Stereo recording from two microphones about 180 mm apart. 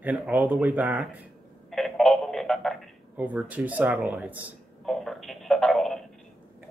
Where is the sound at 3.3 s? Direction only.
10° right (ahead or behind).